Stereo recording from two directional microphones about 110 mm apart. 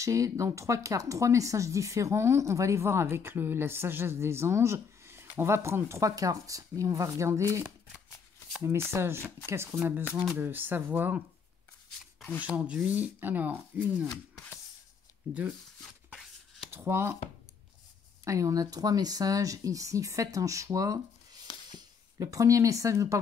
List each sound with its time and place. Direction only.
0.0 s speech: 30° right (ahead or behind)
12.4 s speech: 10° right (ahead or behind)
15.3 s speech: 10° right (ahead or behind)
16.7 s speech: 25° right (ahead or behind)
18.2 s speech: 30° right (ahead or behind)